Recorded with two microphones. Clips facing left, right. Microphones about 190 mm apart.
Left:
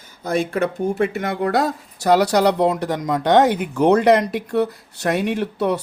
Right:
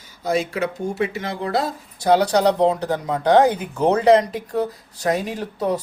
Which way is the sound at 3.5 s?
75° left (ahead or behind).